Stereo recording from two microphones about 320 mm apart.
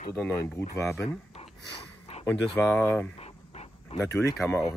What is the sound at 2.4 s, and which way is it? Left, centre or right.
Speech, centre.